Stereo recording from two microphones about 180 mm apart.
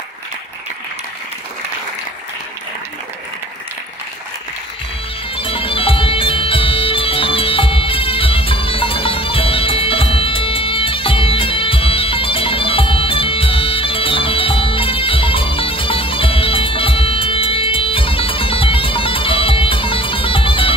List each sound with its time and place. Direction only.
5.3 s music: 30° left (ahead or behind)